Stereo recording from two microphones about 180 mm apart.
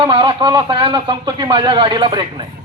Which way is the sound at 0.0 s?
30° right (ahead or behind).